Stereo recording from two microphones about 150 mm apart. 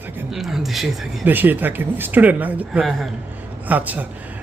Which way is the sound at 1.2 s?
10° right (ahead or behind).